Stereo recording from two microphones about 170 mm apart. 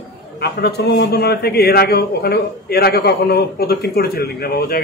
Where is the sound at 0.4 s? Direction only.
70° left (ahead or behind).